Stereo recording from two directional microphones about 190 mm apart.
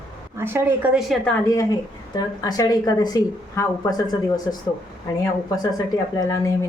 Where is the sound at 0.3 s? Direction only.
10° right (ahead or behind).